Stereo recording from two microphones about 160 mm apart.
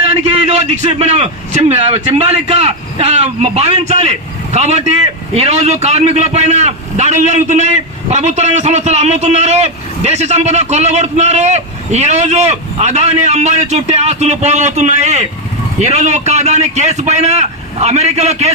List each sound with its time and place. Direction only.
0.2 s a man's voice: 45° right (ahead or behind)